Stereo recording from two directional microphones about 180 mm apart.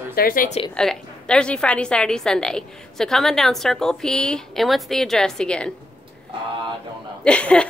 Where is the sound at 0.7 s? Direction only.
5° left (ahead or behind).